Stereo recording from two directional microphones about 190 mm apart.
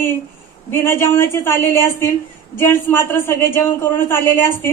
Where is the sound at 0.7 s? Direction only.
10° left (ahead or behind).